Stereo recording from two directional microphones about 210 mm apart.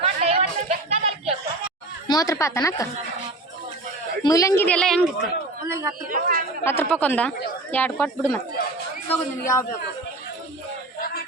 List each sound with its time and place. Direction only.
0.0 s a sound: 30° right (ahead or behind)
2.0 s speech: 15° left (ahead or behind)
4.2 s speech: 15° left (ahead or behind)
5.6 s a man's voice: 15° right (ahead or behind)
6.1 s speech: 40° right (ahead or behind)
6.7 s speech: 10° left (ahead or behind)
9.4 s speech: 15° left (ahead or behind)